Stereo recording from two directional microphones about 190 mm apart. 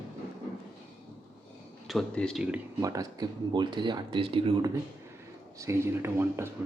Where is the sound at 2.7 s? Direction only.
20° right (ahead or behind).